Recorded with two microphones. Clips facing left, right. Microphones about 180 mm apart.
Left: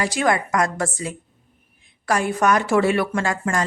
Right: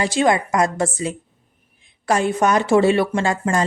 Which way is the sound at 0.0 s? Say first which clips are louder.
Right 3 dB; 25° right (ahead or behind).